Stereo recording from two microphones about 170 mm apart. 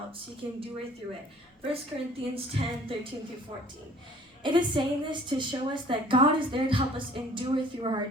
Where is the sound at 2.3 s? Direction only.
35° right (ahead or behind).